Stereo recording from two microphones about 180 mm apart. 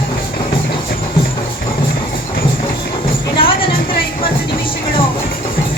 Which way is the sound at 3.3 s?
30° left (ahead or behind).